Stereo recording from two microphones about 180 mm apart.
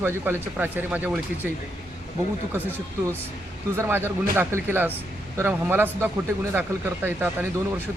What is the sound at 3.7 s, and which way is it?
Speech, 15° right (ahead or behind).